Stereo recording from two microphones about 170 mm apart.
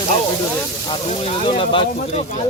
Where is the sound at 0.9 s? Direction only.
30° left (ahead or behind).